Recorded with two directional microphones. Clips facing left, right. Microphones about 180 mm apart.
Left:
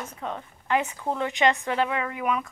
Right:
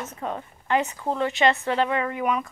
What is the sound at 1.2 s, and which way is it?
Speech, 15° left (ahead or behind).